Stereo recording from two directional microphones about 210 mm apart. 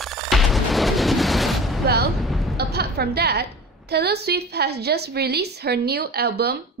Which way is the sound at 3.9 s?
50° right (ahead or behind).